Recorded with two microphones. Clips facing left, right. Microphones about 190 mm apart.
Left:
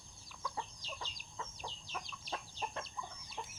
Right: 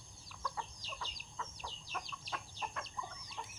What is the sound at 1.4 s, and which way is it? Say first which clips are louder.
Chicken: left 1 dB; 20° left (ahead or behind).